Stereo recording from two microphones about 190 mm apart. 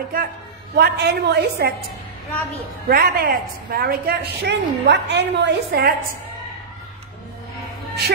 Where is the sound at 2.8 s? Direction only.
50° right (ahead or behind).